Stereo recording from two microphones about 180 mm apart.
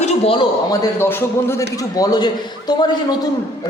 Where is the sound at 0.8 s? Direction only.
15° left (ahead or behind).